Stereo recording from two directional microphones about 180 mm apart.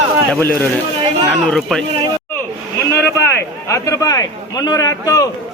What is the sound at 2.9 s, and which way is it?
A man's voice, 15° left (ahead or behind).